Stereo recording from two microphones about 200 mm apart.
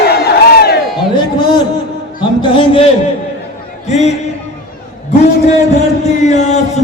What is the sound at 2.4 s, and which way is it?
A man's voice, 25° left (ahead or behind).